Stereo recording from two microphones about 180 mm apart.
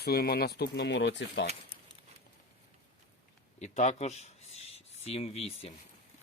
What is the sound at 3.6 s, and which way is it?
Speech, 40° left (ahead or behind).